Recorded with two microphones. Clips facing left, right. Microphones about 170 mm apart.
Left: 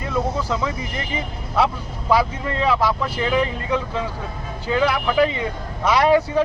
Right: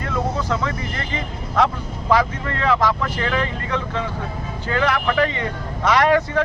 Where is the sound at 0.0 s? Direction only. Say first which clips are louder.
Left 1 dB; 15° left (ahead or behind).